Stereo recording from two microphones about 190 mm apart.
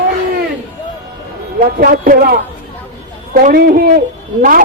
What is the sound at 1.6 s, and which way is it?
A woman's voice, 50° right (ahead or behind).